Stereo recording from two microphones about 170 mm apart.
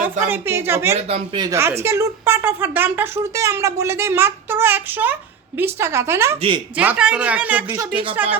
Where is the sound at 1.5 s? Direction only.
15° right (ahead or behind).